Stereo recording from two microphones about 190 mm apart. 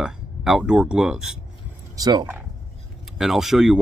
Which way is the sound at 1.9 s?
20° right (ahead or behind).